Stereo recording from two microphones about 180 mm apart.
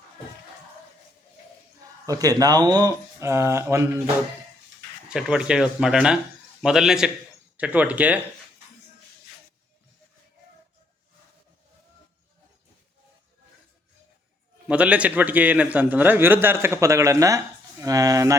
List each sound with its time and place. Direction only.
2.0 s speech: 20° right (ahead or behind)
5.0 s a man's voice: 5° right (ahead or behind)
14.7 s a man's voice: 5° right (ahead or behind)